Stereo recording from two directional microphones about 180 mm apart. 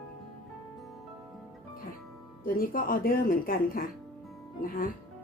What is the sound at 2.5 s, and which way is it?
Speech, 55° left (ahead or behind).